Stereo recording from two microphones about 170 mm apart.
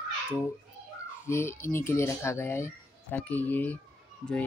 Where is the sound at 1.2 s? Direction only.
15° left (ahead or behind).